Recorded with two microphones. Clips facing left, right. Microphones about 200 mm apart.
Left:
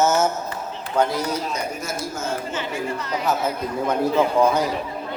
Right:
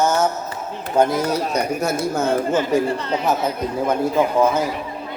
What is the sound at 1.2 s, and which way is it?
Speech, 65° right (ahead or behind).